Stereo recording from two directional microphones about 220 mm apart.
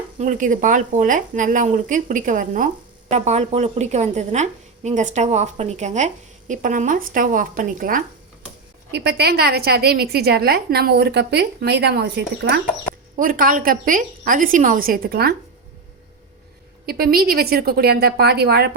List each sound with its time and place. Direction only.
0.2 s a woman's voice: 35° right (ahead or behind)
16.8 s a woman's voice: 45° right (ahead or behind)